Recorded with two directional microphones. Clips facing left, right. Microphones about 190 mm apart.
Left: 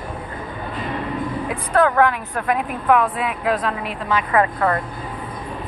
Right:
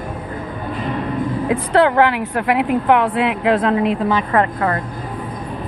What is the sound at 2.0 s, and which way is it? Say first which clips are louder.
Speech: right 3 dB; 80° right.